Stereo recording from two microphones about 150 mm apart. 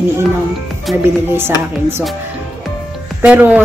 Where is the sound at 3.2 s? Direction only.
10° right (ahead or behind).